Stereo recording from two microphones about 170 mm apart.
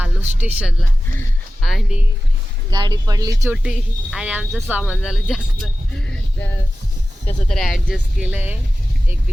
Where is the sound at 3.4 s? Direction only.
5° right (ahead or behind).